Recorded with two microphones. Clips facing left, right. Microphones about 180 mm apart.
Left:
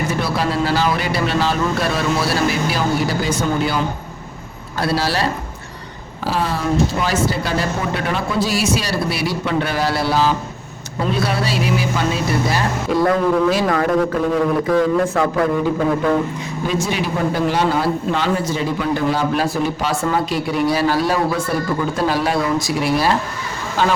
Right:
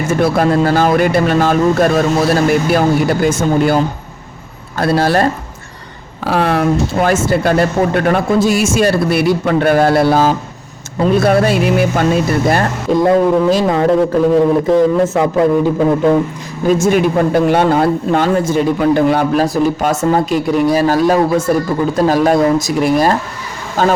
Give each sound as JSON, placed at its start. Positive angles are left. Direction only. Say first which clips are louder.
{"t": 0.1, "sound": "speech", "louder": "right 8 dB", "side_deg": -50}
{"t": 4.8, "sound": "speech", "louder": "right 7 dB", "side_deg": -50}
{"t": 6.2, "sound": "speech", "louder": "right 7 dB", "side_deg": -65}
{"t": 13.0, "sound": "a man's voice", "louder": "right 5 dB", "side_deg": -20}
{"t": 16.6, "sound": "speech", "louder": "right 10 dB", "side_deg": -45}